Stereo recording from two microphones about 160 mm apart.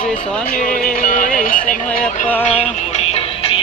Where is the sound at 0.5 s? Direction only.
60° left (ahead or behind).